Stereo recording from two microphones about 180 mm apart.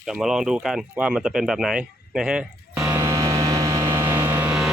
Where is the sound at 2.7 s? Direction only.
15° right (ahead or behind).